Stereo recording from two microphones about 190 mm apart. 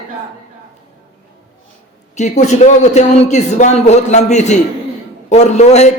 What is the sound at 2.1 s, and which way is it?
A man's voice, 40° left (ahead or behind).